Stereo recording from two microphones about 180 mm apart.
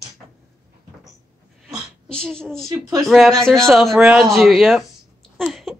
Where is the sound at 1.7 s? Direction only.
5° left (ahead or behind).